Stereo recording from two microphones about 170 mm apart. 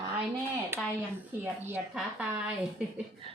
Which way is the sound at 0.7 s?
10° right (ahead or behind).